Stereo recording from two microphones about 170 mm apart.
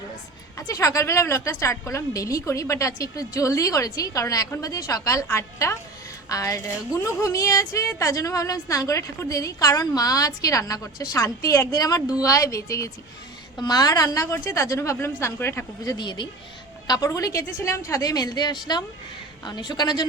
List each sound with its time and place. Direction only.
0.5 s a woman's voice: 20° left (ahead or behind)